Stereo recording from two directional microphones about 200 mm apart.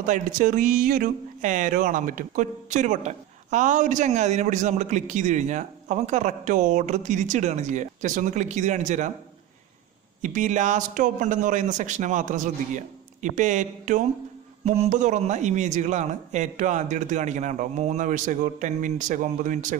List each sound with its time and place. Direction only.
0.0 s speech: 40° right (ahead or behind)
10.2 s speech: 40° right (ahead or behind)